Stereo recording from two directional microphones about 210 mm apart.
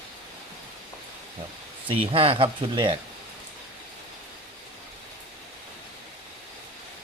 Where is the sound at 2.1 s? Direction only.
25° right (ahead or behind).